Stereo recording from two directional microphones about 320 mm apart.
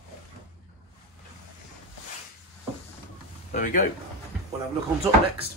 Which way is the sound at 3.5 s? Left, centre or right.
Left.